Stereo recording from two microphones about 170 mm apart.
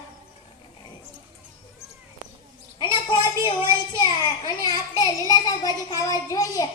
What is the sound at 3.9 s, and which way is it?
Child singing, 25° left (ahead or behind).